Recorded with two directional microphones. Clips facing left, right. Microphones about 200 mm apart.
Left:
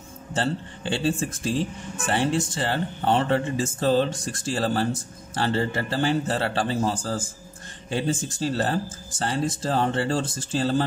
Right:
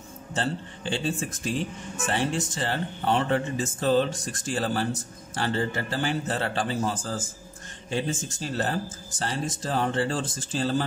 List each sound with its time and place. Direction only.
0.9 s speech: 30° left (ahead or behind)